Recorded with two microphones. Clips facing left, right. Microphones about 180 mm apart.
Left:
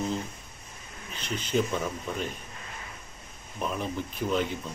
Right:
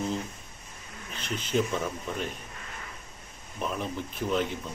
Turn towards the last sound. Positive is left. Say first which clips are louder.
# even
turn(degrees=0)  # may be behind; listen again after turning